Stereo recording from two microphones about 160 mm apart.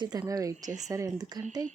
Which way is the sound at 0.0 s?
20° right (ahead or behind).